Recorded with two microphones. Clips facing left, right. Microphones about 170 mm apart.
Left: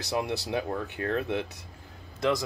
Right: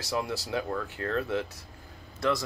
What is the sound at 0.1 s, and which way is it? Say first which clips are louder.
Speech: left 2 dB; 20° left (ahead or behind).